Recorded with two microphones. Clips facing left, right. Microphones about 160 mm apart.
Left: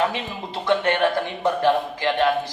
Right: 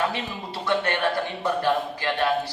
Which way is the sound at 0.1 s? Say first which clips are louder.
Left 2 dB; 20° left (ahead or behind).